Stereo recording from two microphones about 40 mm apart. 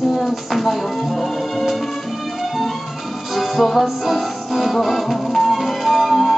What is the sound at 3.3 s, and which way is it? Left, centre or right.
Music, centre.